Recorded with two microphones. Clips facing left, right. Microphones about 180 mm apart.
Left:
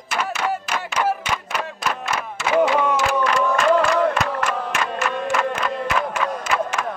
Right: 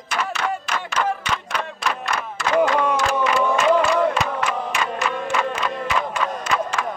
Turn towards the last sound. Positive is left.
turn(degrees=5)  # may be behind; listen again after turning